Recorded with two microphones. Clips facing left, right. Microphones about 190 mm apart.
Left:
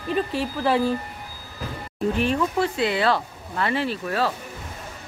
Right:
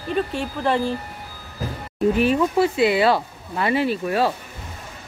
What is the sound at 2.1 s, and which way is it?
Speech, 10° right (ahead or behind).